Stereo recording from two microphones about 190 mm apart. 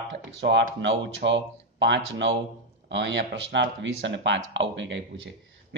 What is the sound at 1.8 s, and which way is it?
A man's voice, 75° right (ahead or behind).